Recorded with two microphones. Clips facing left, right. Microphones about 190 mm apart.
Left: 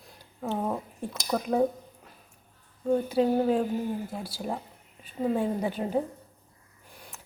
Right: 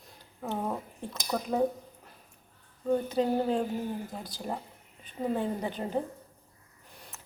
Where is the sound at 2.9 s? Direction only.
10° left (ahead or behind).